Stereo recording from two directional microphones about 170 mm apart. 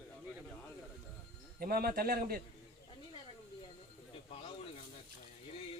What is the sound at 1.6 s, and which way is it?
Speech, 65° right (ahead or behind).